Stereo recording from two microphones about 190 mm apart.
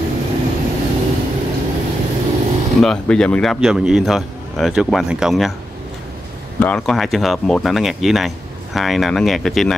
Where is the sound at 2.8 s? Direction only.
5° left (ahead or behind).